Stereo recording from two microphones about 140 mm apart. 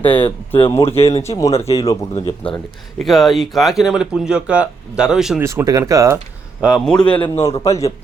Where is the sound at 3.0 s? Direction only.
Centre (ahead or behind).